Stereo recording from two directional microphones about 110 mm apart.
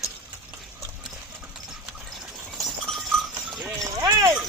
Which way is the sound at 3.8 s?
35° right (ahead or behind).